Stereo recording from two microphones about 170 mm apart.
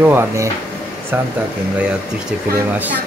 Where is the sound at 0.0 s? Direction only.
15° right (ahead or behind).